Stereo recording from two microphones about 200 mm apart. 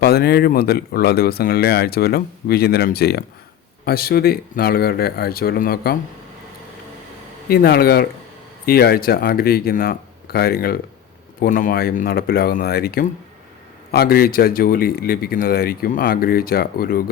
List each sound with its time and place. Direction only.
0.0 s speech: 50° left (ahead or behind)
7.4 s speech: 50° left (ahead or behind)